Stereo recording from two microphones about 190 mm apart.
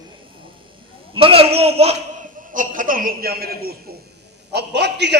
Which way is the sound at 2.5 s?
45° right (ahead or behind).